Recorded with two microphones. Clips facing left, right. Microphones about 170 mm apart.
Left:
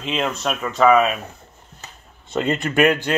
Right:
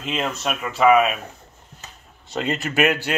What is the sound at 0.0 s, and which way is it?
Speech, centre (ahead or behind).